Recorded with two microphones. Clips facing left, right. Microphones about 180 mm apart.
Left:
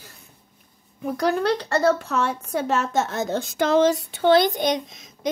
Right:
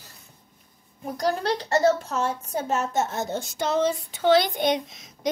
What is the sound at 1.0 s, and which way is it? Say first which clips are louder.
A woman's voice: left 4 dB; 65° left (ahead or behind).